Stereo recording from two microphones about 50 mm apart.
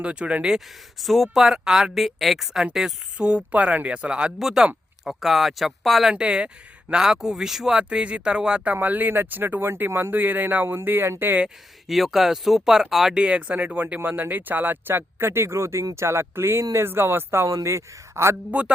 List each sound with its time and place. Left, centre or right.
0.0 s speech: right
0.9 s a woman's voice: centre
3.2 s speech: right
4.4 s a woman's voice: centre
6.1 s speech: centre
7.8 s speech: right
8.6 s speech: right
11.9 s a woman's voice: centre
13.1 s speech: right
13.7 s speech: right
17.4 s a man's voice: right